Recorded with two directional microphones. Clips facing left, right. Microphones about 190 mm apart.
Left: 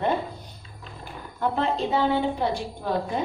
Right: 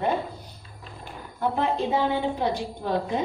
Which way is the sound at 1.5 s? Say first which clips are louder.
Even; 15° right (ahead or behind).